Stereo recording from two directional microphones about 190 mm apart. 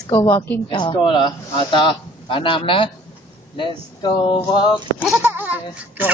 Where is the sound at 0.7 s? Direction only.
25° left (ahead or behind).